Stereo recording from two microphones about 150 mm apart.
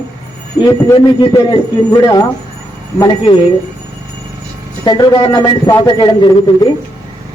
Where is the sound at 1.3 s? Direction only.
25° left (ahead or behind).